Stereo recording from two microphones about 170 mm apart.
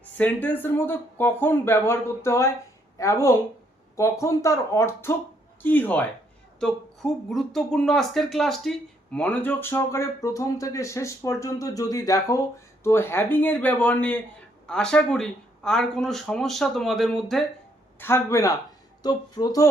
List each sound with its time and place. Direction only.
0.2 s speech: 10° left (ahead or behind)
18.0 s speech: 15° left (ahead or behind)